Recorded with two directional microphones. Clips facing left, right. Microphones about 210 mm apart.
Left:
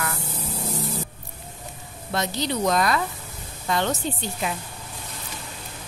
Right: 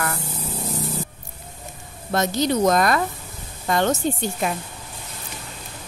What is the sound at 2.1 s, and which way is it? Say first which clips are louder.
Speech: right 5 dB; 45° right (ahead or behind).